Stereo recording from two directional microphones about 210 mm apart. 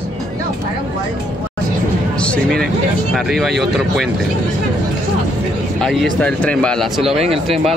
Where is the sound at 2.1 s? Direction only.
5° left (ahead or behind).